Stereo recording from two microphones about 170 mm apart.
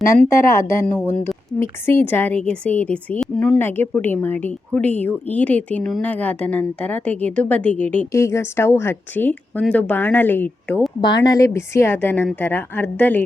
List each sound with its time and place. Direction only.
0.2 s speech: 15° left (ahead or behind)
11.0 s speech: 25° left (ahead or behind)